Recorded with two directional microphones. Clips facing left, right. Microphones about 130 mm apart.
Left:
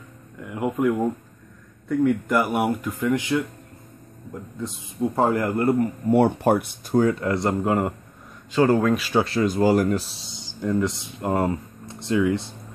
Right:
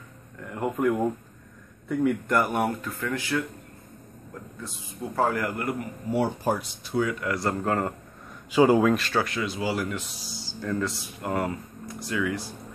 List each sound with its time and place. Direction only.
0.5 s speech: 5° left (ahead or behind)
4.6 s a man's voice: 20° left (ahead or behind)
6.0 s speech: 60° left (ahead or behind); by 7.9 s 15° left (ahead or behind)
8.5 s speech: 10° right (ahead or behind)
9.2 s speech: 35° left (ahead or behind)
9.5 s speech: 45° left (ahead or behind); by 12.5 s 25° left (ahead or behind)